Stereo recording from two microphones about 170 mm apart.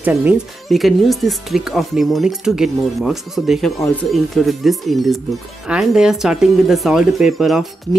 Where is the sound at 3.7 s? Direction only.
20° left (ahead or behind).